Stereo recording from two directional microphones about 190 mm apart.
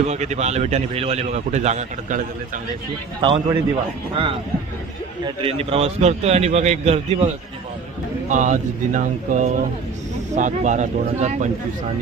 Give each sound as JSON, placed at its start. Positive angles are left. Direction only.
{"t": 0.1, "sound": "speech", "side_deg": -35}
{"t": 3.2, "sound": "speech", "side_deg": -25}
{"t": 8.3, "sound": "speech", "side_deg": -40}